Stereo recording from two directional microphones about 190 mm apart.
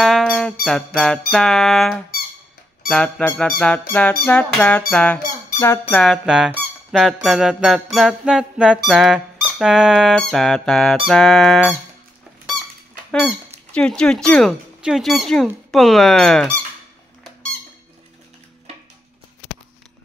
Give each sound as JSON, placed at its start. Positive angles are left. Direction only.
{"t": 0.0, "sound": "squeak", "side_deg": 0}
{"t": 0.7, "sound": "speech", "side_deg": 5}
{"t": 6.2, "sound": "speech", "side_deg": -5}
{"t": 13.7, "sound": "speech", "side_deg": 5}